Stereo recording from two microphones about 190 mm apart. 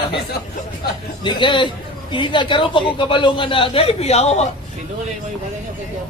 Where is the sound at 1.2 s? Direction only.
25° left (ahead or behind).